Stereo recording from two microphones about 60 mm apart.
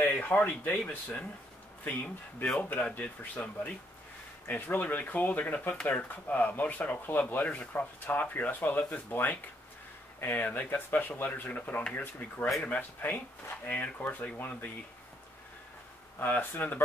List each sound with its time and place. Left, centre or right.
0.0 s speech: left
2.7 s speech: left
16.2 s speech: left